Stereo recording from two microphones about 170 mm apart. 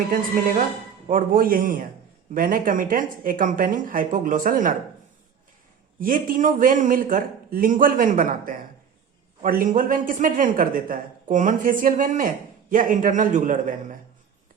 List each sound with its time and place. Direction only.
1.0 s a man's voice: 55° right (ahead or behind)
6.0 s a man's voice: 55° right (ahead or behind)